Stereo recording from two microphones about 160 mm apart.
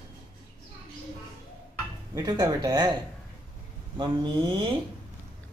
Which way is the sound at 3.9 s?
30° right (ahead or behind).